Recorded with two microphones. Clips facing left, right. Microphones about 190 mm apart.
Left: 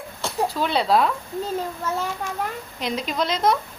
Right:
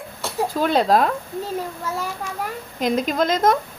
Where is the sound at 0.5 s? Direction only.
45° right (ahead or behind).